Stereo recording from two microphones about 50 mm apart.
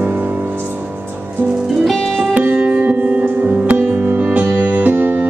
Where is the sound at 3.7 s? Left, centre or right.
Right.